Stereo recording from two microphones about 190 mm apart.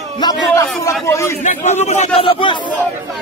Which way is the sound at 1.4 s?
40° left (ahead or behind).